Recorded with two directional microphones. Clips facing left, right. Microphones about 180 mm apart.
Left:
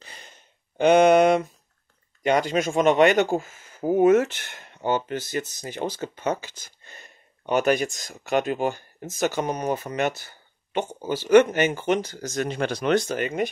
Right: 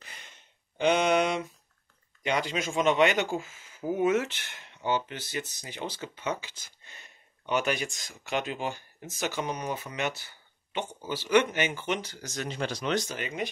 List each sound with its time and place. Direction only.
0.0 s sigh: 35° left (ahead or behind)
0.7 s a sound: 50° left (ahead or behind)
2.2 s speech: 50° left (ahead or behind)